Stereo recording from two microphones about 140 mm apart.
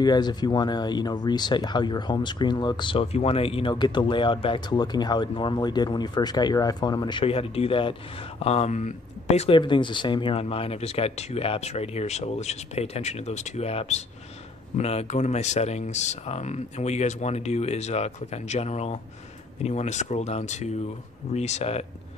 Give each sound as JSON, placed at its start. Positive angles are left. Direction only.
{"t": 0.0, "sound": "speech", "side_deg": 30}
{"t": 9.6, "sound": "speech", "side_deg": 35}